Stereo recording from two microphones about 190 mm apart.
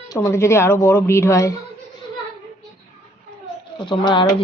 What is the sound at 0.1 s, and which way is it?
A woman's voice, 15° left (ahead or behind).